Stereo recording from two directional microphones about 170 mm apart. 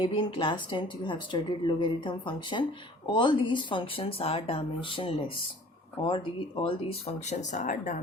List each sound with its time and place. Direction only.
0.0 s speech: 30° left (ahead or behind)
7.3 s speech: 45° left (ahead or behind)